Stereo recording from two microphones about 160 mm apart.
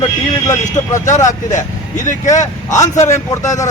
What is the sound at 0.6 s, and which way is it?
A man's voice, 50° left (ahead or behind).